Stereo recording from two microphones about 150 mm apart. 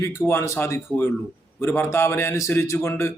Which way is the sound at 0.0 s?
20° left (ahead or behind).